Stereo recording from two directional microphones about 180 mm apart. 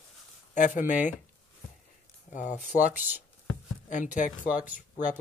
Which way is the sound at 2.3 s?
45° left (ahead or behind).